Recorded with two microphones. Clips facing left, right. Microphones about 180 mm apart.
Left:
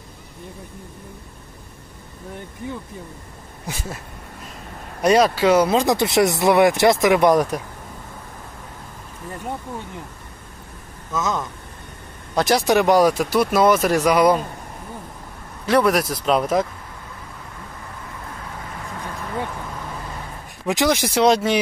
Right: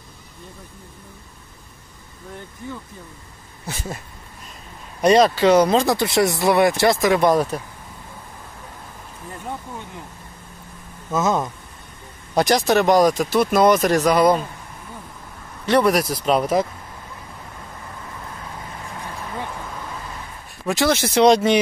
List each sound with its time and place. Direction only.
3.7 s speech: 15° left (ahead or behind)
5.0 s speech: 10° left (ahead or behind)
5.9 s speech: 20° left (ahead or behind)
11.1 s speech: 30° right (ahead or behind)
12.4 s speech: 10° left (ahead or behind)
15.6 s speech: centre (ahead or behind)
20.6 s speech: 15° left (ahead or behind)